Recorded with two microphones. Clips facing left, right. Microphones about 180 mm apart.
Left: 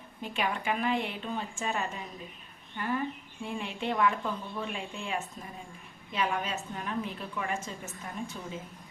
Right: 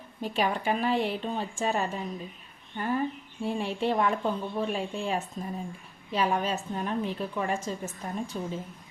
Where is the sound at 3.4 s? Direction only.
35° right (ahead or behind).